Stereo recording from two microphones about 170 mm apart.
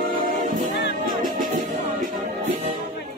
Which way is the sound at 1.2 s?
50° right (ahead or behind).